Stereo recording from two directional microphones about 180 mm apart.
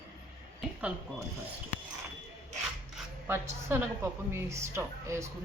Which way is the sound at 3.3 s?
15° right (ahead or behind).